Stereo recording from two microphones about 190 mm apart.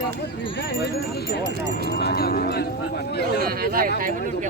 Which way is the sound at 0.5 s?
60° left (ahead or behind).